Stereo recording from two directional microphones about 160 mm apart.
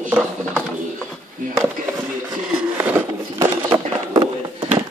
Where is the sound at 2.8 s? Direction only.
15° right (ahead or behind).